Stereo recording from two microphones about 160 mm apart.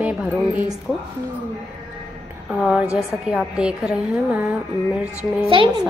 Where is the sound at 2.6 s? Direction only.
5° right (ahead or behind).